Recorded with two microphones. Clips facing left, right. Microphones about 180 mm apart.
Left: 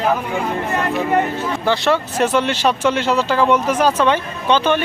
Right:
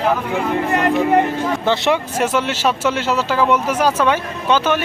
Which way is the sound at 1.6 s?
20° right (ahead or behind).